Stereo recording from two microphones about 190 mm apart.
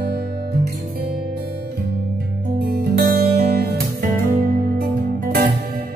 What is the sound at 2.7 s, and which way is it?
Music, 50° right (ahead or behind).